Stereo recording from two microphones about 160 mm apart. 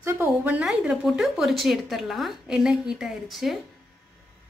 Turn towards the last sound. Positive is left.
turn(degrees=0)  # may be behind; listen again after turning